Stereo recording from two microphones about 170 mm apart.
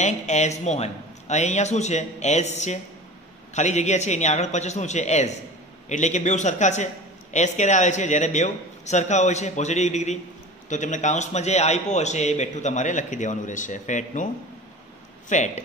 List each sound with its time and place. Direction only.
0.0 s a man's voice: 40° left (ahead or behind)